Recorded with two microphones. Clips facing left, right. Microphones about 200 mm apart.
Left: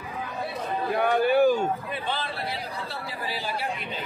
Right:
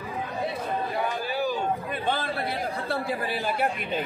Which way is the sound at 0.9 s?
60° left (ahead or behind).